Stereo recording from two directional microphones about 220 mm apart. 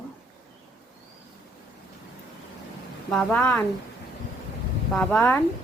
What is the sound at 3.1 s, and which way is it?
Speech, 5° left (ahead or behind).